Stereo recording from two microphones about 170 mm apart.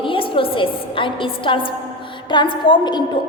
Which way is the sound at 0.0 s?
30° left (ahead or behind).